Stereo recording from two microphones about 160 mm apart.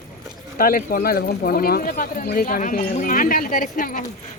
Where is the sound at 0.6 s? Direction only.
65° left (ahead or behind).